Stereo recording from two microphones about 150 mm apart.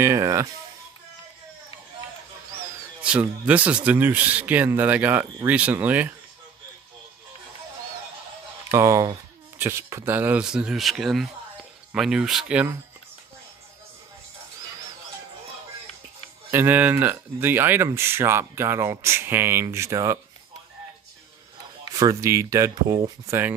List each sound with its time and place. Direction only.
0.0 s speech: 20° right (ahead or behind)
3.0 s speech: 10° right (ahead or behind)
8.7 s speech: 20° right (ahead or behind)
16.4 s speech: 15° right (ahead or behind)
21.9 s speech: 20° right (ahead or behind)